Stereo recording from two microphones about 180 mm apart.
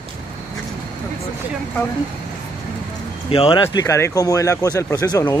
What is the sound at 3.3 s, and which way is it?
Speech, 30° left (ahead or behind).